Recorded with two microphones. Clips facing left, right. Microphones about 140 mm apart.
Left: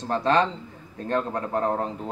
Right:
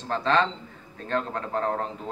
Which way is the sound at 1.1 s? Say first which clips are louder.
Left 2 dB; 15° left (ahead or behind).